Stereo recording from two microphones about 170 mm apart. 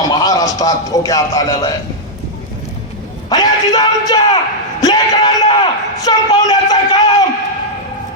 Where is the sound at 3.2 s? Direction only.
25° left (ahead or behind).